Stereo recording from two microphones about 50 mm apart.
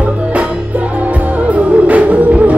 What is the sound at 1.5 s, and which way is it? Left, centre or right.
Music, right.